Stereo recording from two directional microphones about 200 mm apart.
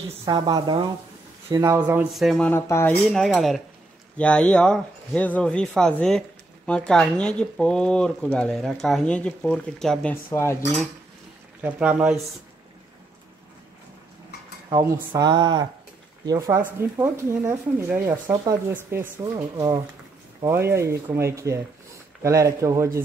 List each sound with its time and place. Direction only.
0.2 s speech: 20° right (ahead or behind); by 10.1 s 5° left (ahead or behind)
10.3 s cutlery: 15° left (ahead or behind)
11.6 s speech: 5° right (ahead or behind)
14.7 s speech: 15° right (ahead or behind)